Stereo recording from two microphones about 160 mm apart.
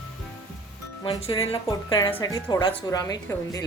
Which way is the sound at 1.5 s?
30° left (ahead or behind).